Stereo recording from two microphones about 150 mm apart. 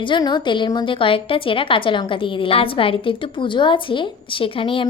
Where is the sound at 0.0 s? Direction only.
30° left (ahead or behind).